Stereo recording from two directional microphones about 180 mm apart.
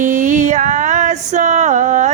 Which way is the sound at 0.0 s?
45° right (ahead or behind).